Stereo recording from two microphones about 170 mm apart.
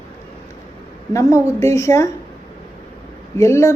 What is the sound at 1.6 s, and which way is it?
Speech, 15° left (ahead or behind).